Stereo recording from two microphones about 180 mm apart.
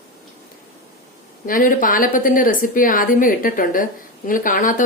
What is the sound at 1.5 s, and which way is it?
A woman's voice, 50° left (ahead or behind).